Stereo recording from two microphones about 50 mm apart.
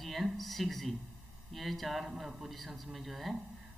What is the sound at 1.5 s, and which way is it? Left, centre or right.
A man's voice, centre.